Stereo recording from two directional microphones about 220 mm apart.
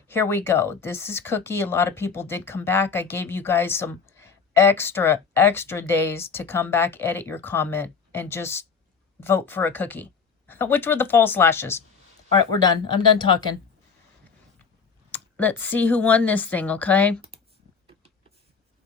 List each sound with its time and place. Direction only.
0.1 s speech: 10° left (ahead or behind)
15.1 s speech: 10° left (ahead or behind)